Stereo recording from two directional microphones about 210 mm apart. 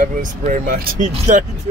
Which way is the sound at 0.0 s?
40° right (ahead or behind).